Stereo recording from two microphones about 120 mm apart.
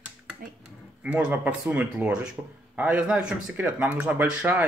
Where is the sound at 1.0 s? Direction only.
10° right (ahead or behind).